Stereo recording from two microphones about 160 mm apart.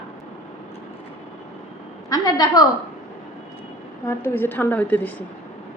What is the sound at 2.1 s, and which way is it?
Speech, 20° left (ahead or behind).